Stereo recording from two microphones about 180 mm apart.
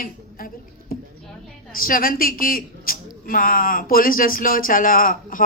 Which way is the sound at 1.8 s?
55° left (ahead or behind).